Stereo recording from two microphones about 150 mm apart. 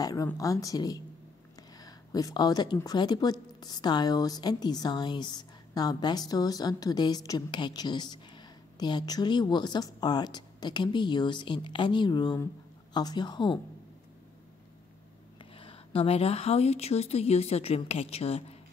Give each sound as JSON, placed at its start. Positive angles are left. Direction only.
{"t": 0.0, "sound": "a woman's voice", "side_deg": 25}
{"t": 15.5, "sound": "a woman's voice", "side_deg": 35}